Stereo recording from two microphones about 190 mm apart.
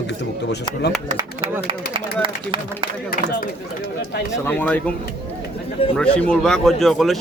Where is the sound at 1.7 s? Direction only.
25° right (ahead or behind).